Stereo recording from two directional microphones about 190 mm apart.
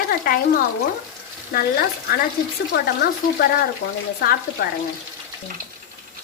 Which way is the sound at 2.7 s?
55° left (ahead or behind).